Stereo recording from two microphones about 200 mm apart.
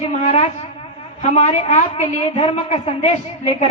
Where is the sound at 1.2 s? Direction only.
35° left (ahead or behind).